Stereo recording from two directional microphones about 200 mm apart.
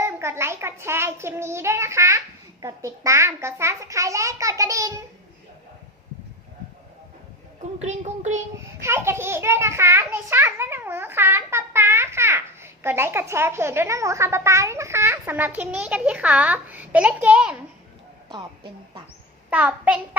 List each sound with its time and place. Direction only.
0.0 s a child's voice: 15° right (ahead or behind)
7.6 s a sound: 35° right (ahead or behind)
8.8 s a child's voice: 15° right (ahead or behind)
18.3 s a woman's voice: 25° right (ahead or behind)
19.5 s a child's voice: 5° right (ahead or behind)